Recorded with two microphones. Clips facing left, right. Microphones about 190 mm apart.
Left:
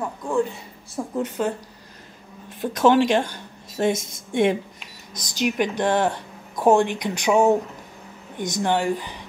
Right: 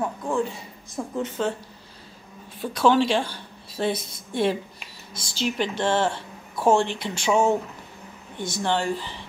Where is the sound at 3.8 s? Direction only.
45° left (ahead or behind).